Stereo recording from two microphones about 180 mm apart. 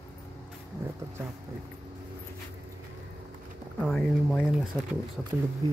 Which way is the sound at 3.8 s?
Centre (ahead or behind).